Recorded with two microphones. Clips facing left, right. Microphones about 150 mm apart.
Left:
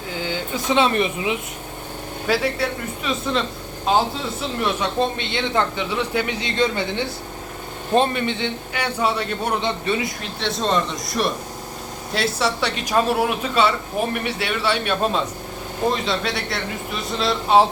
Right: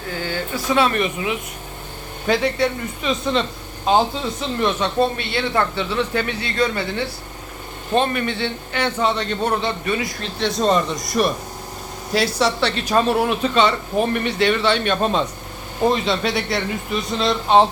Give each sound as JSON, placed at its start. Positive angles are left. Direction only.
{"t": 0.1, "sound": "speech", "side_deg": 15}
{"t": 2.2, "sound": "speech", "side_deg": 5}
{"t": 4.9, "sound": "speech", "side_deg": 20}
{"t": 9.6, "sound": "speech", "side_deg": 25}
{"t": 10.4, "sound": "speech", "side_deg": 0}